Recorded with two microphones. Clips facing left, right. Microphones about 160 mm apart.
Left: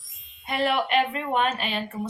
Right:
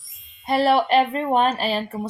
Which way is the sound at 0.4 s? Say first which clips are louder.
Right 6 dB; 35° right (ahead or behind).